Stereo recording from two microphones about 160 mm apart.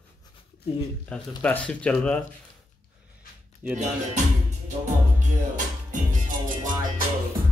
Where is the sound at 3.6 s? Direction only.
10° right (ahead or behind).